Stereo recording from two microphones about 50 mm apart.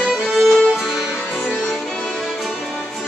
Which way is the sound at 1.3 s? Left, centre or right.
Centre.